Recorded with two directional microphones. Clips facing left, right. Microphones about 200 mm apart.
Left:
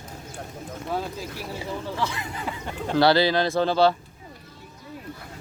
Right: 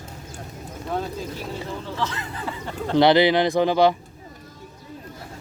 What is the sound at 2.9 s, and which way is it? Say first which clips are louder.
Speech: right 3 dB; 20° right (ahead or behind).